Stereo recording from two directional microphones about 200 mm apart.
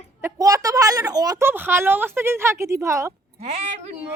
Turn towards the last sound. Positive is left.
turn(degrees=-35)  # may be behind; listen again after turning